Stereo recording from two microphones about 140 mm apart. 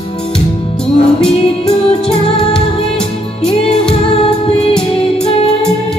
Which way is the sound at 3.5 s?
45° left (ahead or behind).